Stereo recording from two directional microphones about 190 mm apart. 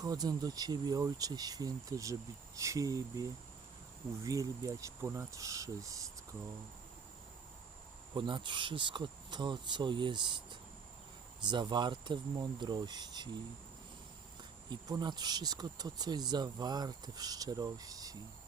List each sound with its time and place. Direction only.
0.0 s speech: 20° right (ahead or behind)
8.1 s speech: 25° right (ahead or behind)
14.7 s speech: 20° right (ahead or behind)